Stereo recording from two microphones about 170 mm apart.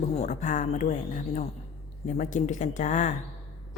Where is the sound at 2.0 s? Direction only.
50° left (ahead or behind).